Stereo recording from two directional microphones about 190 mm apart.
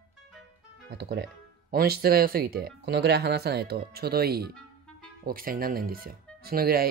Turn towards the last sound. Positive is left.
turn(degrees=-50)  # may be behind; listen again after turning